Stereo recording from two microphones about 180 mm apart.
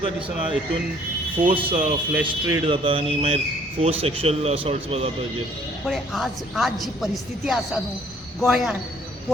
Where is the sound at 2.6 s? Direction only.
30° right (ahead or behind).